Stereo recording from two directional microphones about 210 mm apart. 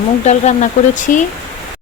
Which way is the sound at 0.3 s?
35° left (ahead or behind).